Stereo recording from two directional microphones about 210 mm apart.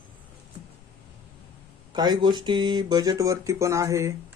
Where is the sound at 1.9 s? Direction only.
20° right (ahead or behind).